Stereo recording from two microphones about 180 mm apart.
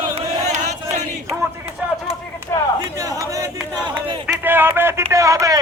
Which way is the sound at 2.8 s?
20° right (ahead or behind).